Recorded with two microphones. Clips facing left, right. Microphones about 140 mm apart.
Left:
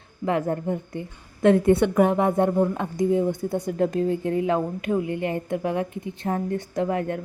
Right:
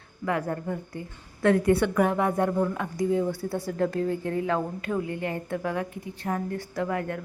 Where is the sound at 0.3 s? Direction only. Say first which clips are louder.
Left 4 dB; 25° left (ahead or behind).